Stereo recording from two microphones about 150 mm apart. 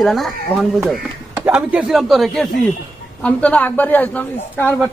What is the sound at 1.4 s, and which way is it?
A man's voice, 10° right (ahead or behind).